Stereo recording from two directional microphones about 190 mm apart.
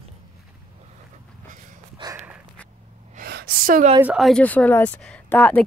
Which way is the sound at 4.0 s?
5° right (ahead or behind).